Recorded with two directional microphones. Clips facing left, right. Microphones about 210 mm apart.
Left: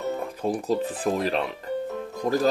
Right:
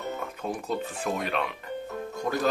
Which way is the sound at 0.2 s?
35° left (ahead or behind).